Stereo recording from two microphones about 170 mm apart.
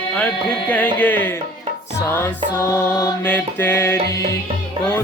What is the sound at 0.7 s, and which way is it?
Music, 10° left (ahead or behind).